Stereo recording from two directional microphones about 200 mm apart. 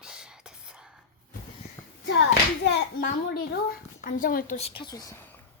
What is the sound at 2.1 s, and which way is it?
Speech, 60° left (ahead or behind).